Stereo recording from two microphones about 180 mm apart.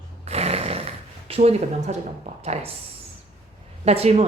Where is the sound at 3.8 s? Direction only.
35° right (ahead or behind).